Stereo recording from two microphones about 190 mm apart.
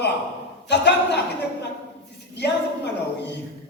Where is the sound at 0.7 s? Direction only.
65° left (ahead or behind).